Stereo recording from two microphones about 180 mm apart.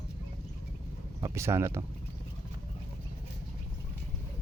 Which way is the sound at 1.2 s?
15° right (ahead or behind).